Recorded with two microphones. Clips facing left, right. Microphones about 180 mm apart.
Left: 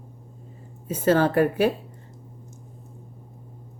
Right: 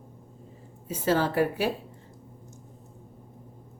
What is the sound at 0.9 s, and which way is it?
Speech, 55° left (ahead or behind).